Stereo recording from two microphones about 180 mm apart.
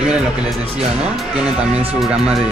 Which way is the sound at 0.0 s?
5° right (ahead or behind).